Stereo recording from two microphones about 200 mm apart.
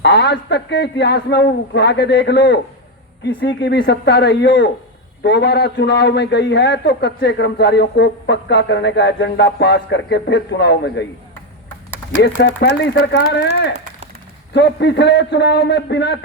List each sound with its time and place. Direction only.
0.0 s a man's voice: 60° left (ahead or behind)
12.4 s a man's voice: 55° left (ahead or behind)